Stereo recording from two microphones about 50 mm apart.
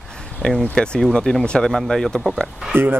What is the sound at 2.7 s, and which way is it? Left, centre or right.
Speech, right.